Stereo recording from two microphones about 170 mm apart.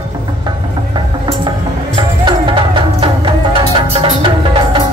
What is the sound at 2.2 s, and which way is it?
Music, 30° right (ahead or behind).